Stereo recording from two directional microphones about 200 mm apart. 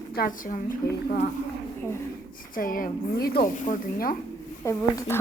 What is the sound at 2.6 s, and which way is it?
A woman's voice, 45° left (ahead or behind).